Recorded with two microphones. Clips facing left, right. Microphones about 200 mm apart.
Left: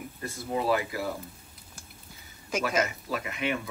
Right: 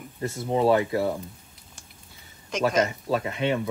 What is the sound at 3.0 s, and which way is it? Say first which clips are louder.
Speech: right 6 dB; 30° right (ahead or behind).